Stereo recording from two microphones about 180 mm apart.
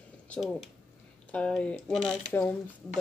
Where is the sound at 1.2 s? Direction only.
5° left (ahead or behind).